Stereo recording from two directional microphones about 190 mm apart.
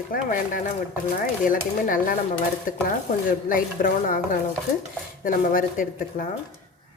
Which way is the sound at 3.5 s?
45° left (ahead or behind).